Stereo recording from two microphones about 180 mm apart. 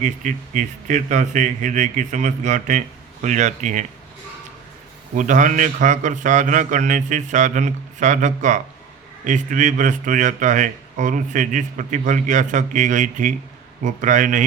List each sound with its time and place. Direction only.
0.0 s speech: 45° right (ahead or behind)
5.1 s speech: 45° right (ahead or behind)